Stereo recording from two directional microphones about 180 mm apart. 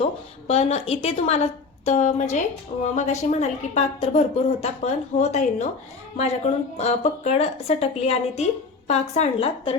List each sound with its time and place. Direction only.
0.0 s a woman's voice: 35° left (ahead or behind)